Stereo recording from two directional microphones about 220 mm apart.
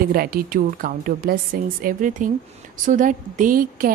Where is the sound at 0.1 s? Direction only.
40° right (ahead or behind).